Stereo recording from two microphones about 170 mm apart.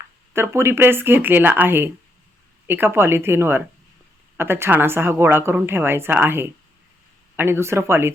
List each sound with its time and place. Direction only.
0.3 s a woman's voice: 15° right (ahead or behind)